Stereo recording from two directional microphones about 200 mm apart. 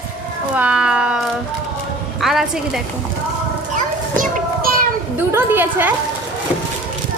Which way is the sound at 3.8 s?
40° right (ahead or behind).